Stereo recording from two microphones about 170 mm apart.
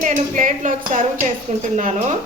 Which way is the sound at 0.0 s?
50° right (ahead or behind).